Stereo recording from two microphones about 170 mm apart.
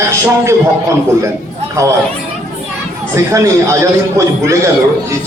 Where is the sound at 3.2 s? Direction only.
15° right (ahead or behind).